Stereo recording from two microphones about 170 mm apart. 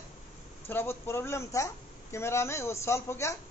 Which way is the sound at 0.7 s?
15° left (ahead or behind).